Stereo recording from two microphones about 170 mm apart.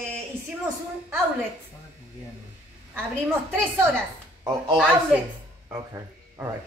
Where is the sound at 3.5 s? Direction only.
10° right (ahead or behind).